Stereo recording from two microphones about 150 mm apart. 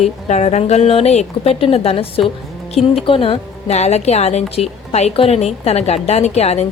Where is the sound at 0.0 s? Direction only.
50° left (ahead or behind).